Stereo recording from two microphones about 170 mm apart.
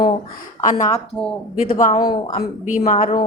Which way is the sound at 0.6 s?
50° left (ahead or behind).